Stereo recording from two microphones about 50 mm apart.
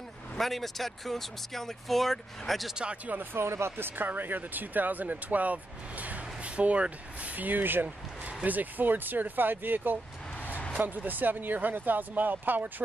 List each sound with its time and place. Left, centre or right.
0.4 s speech: centre
2.7 s speech: right
3.3 s speech: right
8.3 s a sound: right
8.5 s speech: right
10.7 s speech: right